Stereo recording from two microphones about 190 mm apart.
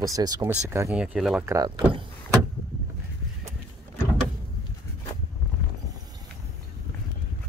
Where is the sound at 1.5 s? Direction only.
15° right (ahead or behind).